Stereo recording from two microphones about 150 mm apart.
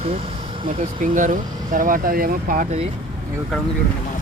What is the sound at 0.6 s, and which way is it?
Speech, 60° right (ahead or behind).